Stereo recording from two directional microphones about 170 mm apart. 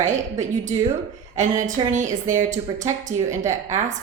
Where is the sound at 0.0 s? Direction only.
45° right (ahead or behind).